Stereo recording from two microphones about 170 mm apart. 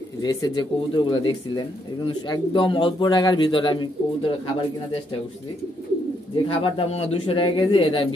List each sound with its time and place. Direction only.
0.2 s a man's voice: 25° left (ahead or behind)
6.3 s speech: 30° left (ahead or behind)